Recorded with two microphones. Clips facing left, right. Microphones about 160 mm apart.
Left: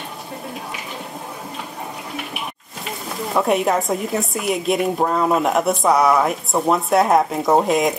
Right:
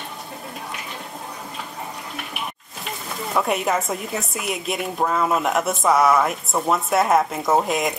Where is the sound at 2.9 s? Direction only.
Centre (ahead or behind).